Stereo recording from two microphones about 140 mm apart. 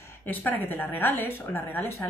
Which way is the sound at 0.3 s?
15° left (ahead or behind).